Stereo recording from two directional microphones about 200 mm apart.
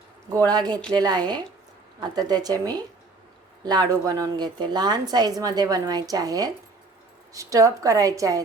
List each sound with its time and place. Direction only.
0.3 s a woman's voice: 20° right (ahead or behind)